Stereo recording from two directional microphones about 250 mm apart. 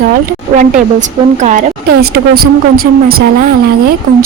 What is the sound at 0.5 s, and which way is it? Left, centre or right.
A woman's voice, right.